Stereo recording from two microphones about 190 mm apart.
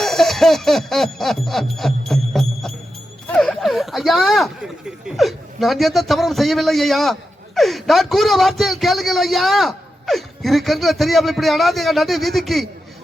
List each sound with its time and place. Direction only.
0.0 s music: centre (ahead or behind)
3.2 s speech: 5° left (ahead or behind)